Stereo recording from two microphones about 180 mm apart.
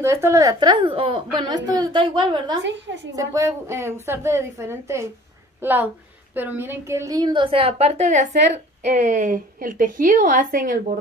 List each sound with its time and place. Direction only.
0.0 s a woman's voice: 15° right (ahead or behind)
2.6 s a woman's voice: 80° right
3.1 s a woman's voice: 20° right (ahead or behind); by 10.8 s 50° right (ahead or behind)